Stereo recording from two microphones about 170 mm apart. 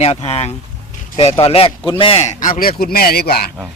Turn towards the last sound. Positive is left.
turn(degrees=65)  # may be behind; listen again after turning